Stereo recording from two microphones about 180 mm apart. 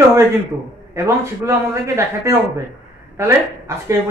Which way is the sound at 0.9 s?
15° right (ahead or behind).